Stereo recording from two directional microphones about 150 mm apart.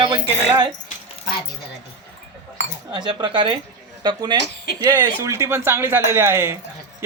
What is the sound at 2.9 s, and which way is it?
Speech, 30° right (ahead or behind).